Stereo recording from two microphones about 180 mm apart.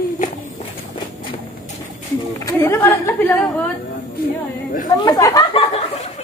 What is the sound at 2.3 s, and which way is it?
A woman's voice, 15° left (ahead or behind).